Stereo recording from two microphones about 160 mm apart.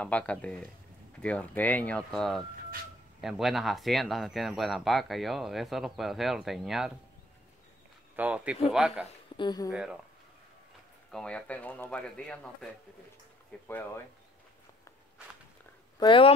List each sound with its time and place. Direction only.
0.0 s speech: 5° left (ahead or behind)
8.2 s speech: 10° right (ahead or behind)
9.4 s speech: 25° left (ahead or behind)
9.7 s speech: 5° right (ahead or behind)
11.1 s speech: 5° left (ahead or behind)
13.7 s speech: 15° left (ahead or behind)
16.0 s speech: 30° left (ahead or behind)